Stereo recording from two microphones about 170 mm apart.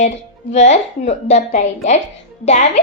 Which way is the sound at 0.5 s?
40° left (ahead or behind).